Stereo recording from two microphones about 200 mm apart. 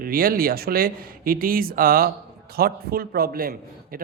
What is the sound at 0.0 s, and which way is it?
A man's voice, 45° right (ahead or behind).